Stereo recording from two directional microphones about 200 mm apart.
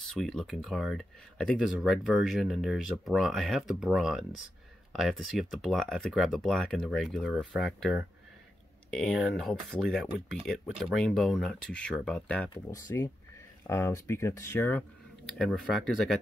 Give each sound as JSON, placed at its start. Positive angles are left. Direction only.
{"t": 0.0, "sound": "speech", "side_deg": 0}
{"t": 12.4, "sound": "speech", "side_deg": 15}
{"t": 15.3, "sound": "speech", "side_deg": 0}